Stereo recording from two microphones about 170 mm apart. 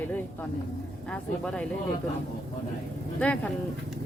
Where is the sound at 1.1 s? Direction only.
5° left (ahead or behind).